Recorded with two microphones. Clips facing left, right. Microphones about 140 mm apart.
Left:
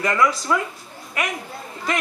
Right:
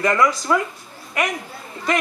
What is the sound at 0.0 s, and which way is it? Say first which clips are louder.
Speech: right 2 dB; 10° right (ahead or behind).